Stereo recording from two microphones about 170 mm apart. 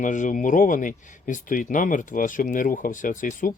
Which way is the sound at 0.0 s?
50° left (ahead or behind).